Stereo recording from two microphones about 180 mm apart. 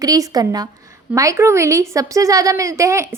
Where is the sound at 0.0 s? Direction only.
20° right (ahead or behind).